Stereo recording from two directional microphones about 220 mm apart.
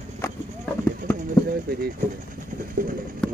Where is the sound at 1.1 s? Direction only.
40° right (ahead or behind).